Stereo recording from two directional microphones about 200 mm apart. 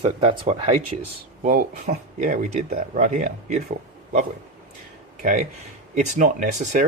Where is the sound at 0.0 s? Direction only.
30° right (ahead or behind).